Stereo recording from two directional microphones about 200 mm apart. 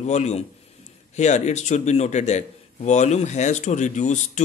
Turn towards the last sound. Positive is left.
turn(degrees=35)  # may be behind; listen again after turning